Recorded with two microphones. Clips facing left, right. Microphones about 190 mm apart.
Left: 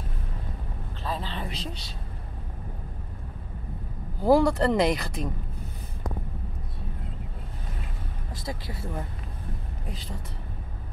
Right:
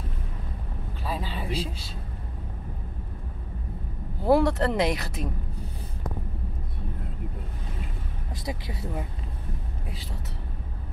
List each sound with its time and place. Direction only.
1.0 s a sound: 10° right (ahead or behind)
4.2 s speech: centre (ahead or behind)
8.5 s speech: 20° right (ahead or behind)